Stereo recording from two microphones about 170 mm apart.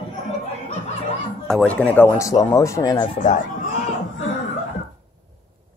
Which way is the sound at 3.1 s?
50° left (ahead or behind).